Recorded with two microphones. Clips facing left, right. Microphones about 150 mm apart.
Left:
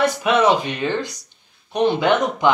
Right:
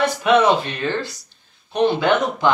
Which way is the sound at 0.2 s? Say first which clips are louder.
Right 4 dB; 10° left (ahead or behind).